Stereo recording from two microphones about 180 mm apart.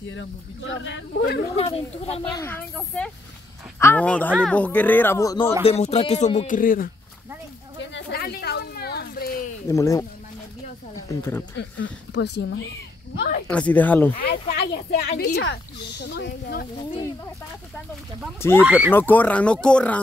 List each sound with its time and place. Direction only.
0.1 s speech: 90° left; by 1.5 s 60° left (ahead or behind)
1.6 s speech: 35° left (ahead or behind)
2.3 s speech: 10° left (ahead or behind)
5.6 s speech: 35° left (ahead or behind); by 6.9 s 50° left (ahead or behind)
7.9 s a sound: 60° left (ahead or behind)
9.7 s speech: 20° left (ahead or behind)
11.1 s speech: 15° left (ahead or behind)
11.5 s speech: 70° left (ahead or behind)
13.5 s speech: 10° left (ahead or behind)
14.2 s speech: 55° left (ahead or behind)
18.6 s speech: 10° right (ahead or behind)
18.9 s speech: 10° left (ahead or behind)